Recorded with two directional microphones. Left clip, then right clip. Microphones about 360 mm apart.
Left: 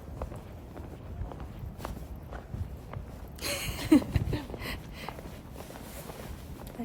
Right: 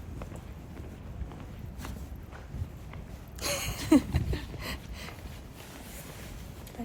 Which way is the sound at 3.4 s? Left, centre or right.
Centre.